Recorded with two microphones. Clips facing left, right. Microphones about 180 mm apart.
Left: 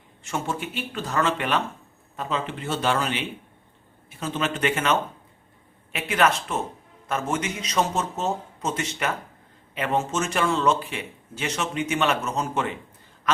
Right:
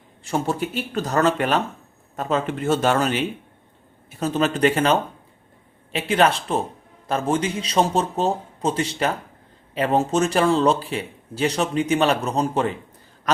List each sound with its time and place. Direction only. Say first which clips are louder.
0.3 s speech: right 5 dB; 35° right (ahead or behind)